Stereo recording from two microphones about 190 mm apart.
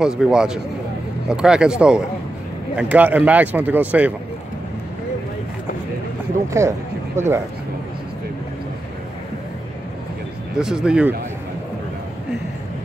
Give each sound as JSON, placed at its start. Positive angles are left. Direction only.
{"t": 0.0, "sound": "speech", "side_deg": -5}
{"t": 6.5, "sound": "speech", "side_deg": -15}
{"t": 10.5, "sound": "speech", "side_deg": -5}